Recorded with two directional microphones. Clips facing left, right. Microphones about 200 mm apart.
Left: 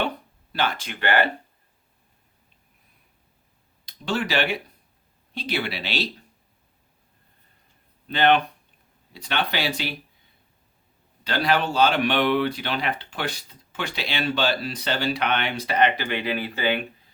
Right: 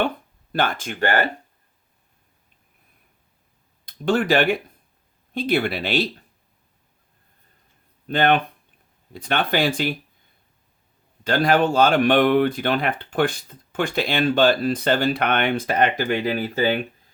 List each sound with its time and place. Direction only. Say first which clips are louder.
0.5 s speech: right 3 dB; 50° right (ahead or behind)
3.8 s speech: right 7 dB; 50° right (ahead or behind)
8.0 s speech: right 1 dB; 50° right (ahead or behind)
11.2 s speech: right 5 dB; 50° right (ahead or behind)